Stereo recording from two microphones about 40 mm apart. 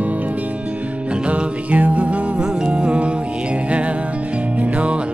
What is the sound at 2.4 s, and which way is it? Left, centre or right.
Music, right.